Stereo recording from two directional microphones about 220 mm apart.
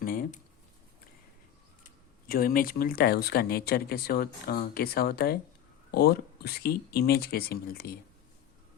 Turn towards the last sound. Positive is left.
turn(degrees=45)  # may be behind; listen again after turning